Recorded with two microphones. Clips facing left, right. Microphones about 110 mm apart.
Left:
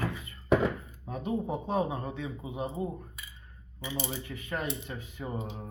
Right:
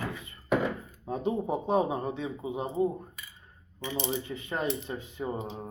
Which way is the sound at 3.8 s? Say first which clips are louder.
Right 2 dB; 5° left (ahead or behind).